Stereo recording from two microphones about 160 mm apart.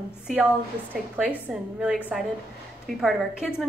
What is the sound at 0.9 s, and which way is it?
A woman's voice, 10° right (ahead or behind).